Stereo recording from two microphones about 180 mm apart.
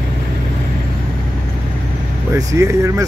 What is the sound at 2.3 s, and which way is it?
Speech, 15° right (ahead or behind).